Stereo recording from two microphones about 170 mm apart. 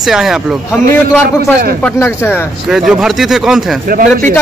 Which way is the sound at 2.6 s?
Centre (ahead or behind).